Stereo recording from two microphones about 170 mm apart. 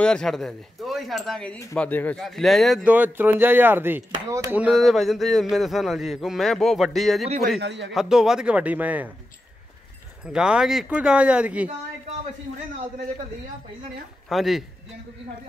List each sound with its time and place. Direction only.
0.0 s speech: 5° left (ahead or behind)
7.6 s a man's voice: 90° right
7.9 s a man's voice: 5° right (ahead or behind)
10.2 s speech: 5° right (ahead or behind)
14.3 s speech: centre (ahead or behind)